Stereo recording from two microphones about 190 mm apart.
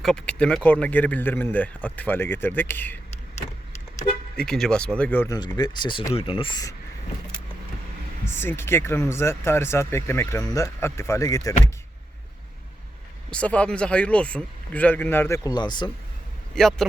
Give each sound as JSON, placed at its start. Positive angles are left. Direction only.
{"t": 0.0, "sound": "speech", "side_deg": 5}
{"t": 4.4, "sound": "speech", "side_deg": 5}
{"t": 5.5, "sound": "speech", "side_deg": 20}
{"t": 8.3, "sound": "speech", "side_deg": 10}
{"t": 13.3, "sound": "speech", "side_deg": 5}
{"t": 16.6, "sound": "speech", "side_deg": 5}